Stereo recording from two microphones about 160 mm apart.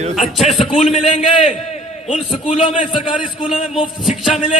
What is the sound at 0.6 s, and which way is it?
A man's voice, 35° left (ahead or behind).